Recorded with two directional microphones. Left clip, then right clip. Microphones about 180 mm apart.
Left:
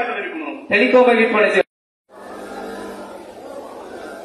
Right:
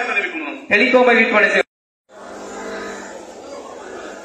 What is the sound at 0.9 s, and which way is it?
Speech, 5° right (ahead or behind).